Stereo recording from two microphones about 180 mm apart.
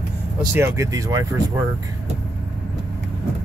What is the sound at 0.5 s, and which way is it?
Speech, 15° right (ahead or behind).